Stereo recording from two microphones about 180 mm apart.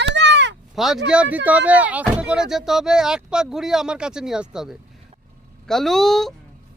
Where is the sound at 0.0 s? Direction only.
75° right (ahead or behind).